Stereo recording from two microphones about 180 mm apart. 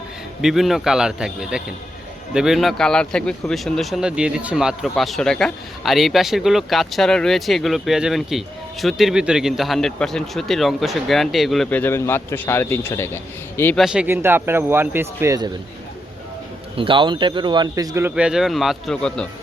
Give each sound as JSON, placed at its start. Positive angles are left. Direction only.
{"t": 0.4, "sound": "speech", "side_deg": 0}
{"t": 13.7, "sound": "a man's voice", "side_deg": -5}
{"t": 16.7, "sound": "a man's voice", "side_deg": -30}
{"t": 18.1, "sound": "speech", "side_deg": -5}